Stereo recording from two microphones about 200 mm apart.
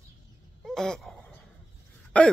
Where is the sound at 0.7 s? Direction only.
5° left (ahead or behind).